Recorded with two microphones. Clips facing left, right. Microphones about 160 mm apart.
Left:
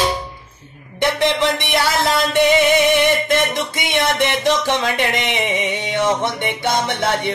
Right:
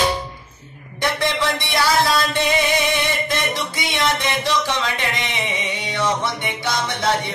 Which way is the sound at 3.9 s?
55° left (ahead or behind).